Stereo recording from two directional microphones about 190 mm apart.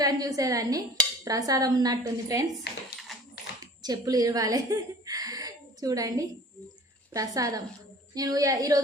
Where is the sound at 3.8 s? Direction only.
20° right (ahead or behind).